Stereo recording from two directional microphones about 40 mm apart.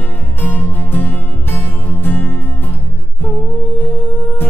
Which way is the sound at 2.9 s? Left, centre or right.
Left.